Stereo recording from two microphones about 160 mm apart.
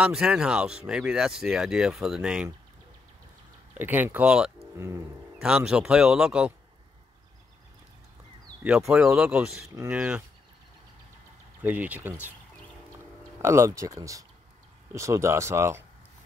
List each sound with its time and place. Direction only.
0.0 s speech: 5° right (ahead or behind)
3.7 s speech: 10° right (ahead or behind)
4.7 s speech: 15° right (ahead or behind)
5.4 s speech: 5° right (ahead or behind)
8.6 s speech: 5° right (ahead or behind)
11.6 s speech: 10° right (ahead or behind)
13.4 s speech: 15° right (ahead or behind)